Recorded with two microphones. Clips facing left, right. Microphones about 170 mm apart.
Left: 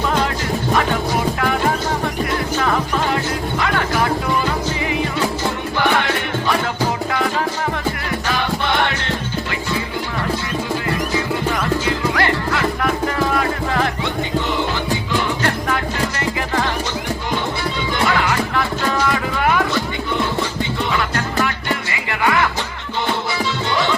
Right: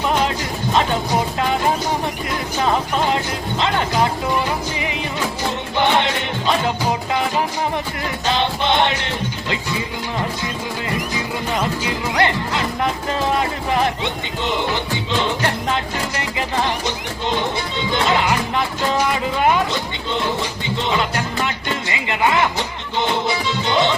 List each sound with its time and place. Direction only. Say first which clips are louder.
1.4 s music: even; 20° right (ahead or behind)
5.7 s music: right 2 dB; 20° right (ahead or behind)
11.1 s music: left 3 dB; 15° right (ahead or behind)
17.9 s music: right 1 dB; 20° right (ahead or behind)
23.6 s music: right 4 dB; 20° right (ahead or behind)